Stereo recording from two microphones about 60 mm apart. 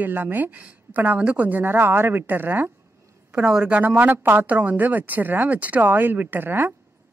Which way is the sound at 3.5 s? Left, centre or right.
Centre.